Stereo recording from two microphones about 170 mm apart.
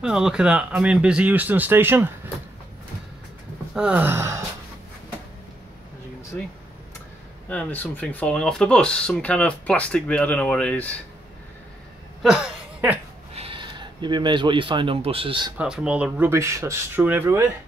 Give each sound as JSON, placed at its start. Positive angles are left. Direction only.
{"t": 0.0, "sound": "speech", "side_deg": -5}
{"t": 3.7, "sound": "speech", "side_deg": -10}
{"t": 7.4, "sound": "speech", "side_deg": 10}
{"t": 12.2, "sound": "a sound", "side_deg": -5}
{"t": 13.3, "sound": "speech", "side_deg": -35}
{"t": 15.5, "sound": "speech", "side_deg": -5}